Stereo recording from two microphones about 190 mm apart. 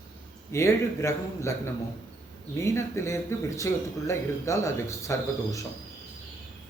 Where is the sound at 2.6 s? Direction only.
15° left (ahead or behind).